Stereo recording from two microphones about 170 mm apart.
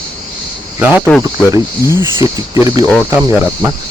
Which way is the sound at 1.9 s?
25° left (ahead or behind).